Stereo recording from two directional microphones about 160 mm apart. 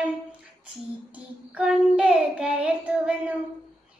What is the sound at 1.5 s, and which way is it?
Child singing, 5° right (ahead or behind).